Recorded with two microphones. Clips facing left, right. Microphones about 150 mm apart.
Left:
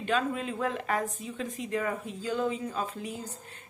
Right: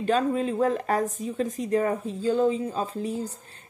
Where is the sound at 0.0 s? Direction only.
35° right (ahead or behind).